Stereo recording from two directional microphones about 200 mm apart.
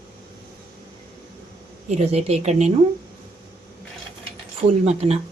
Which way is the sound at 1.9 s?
35° right (ahead or behind).